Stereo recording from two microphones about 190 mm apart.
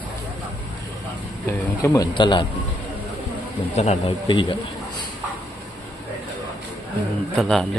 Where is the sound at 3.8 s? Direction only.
35° left (ahead or behind).